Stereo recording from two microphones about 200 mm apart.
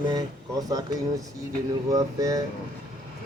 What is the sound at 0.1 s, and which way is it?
Speech, 20° right (ahead or behind).